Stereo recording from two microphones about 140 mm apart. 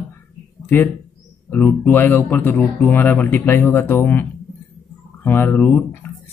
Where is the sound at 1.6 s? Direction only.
10° left (ahead or behind).